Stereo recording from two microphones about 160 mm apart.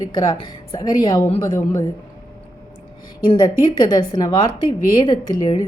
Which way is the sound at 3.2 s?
30° left (ahead or behind).